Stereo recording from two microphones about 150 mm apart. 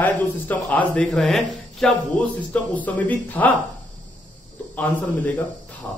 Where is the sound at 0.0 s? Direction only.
10° left (ahead or behind).